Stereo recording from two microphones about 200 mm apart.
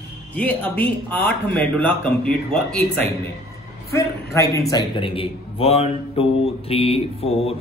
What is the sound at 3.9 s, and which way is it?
Speech, 15° left (ahead or behind).